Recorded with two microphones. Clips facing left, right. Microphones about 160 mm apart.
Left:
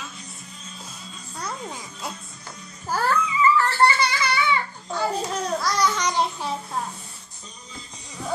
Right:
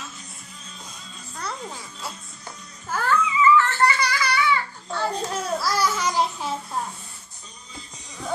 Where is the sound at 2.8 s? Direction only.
35° left (ahead or behind).